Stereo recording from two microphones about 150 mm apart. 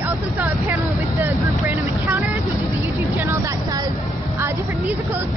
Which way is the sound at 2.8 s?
15° right (ahead or behind).